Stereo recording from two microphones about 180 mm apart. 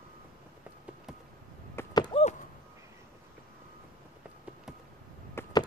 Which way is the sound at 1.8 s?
15° left (ahead or behind).